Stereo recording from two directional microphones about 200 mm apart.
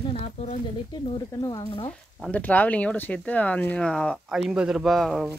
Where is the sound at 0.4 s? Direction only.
30° left (ahead or behind).